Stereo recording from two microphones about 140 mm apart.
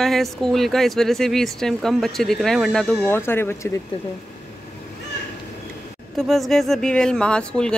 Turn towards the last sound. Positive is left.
turn(degrees=5)  # may be behind; listen again after turning